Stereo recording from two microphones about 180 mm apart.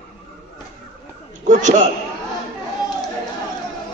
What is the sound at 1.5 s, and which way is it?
Speech, 40° right (ahead or behind).